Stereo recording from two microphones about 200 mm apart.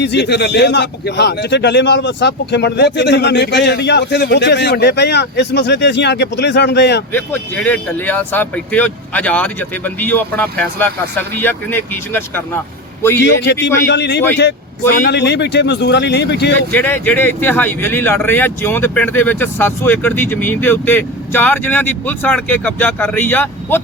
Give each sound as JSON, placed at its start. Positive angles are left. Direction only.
{"t": 0.0, "sound": "a man's voice", "side_deg": 60}
{"t": 7.1, "sound": "a man's voice", "side_deg": 10}
{"t": 13.2, "sound": "a man's voice", "side_deg": 60}
{"t": 16.7, "sound": "speech", "side_deg": 10}